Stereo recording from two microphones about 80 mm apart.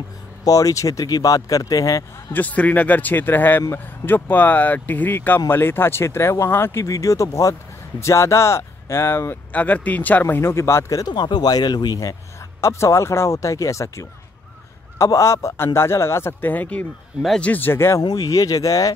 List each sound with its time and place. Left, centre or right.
0.5 s a man's voice: left
2.3 s speech: centre
9.5 s speech: centre
10.2 s speech: left
11.1 s a man's voice: left
18.0 s a man's voice: left